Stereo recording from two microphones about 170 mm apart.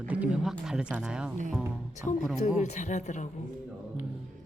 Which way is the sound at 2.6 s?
45° left (ahead or behind).